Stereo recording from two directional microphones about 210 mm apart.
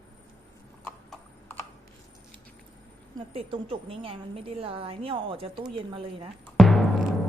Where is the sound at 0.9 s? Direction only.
10° left (ahead or behind).